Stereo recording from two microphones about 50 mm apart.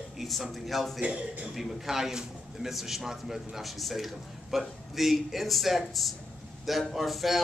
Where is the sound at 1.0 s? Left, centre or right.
Right.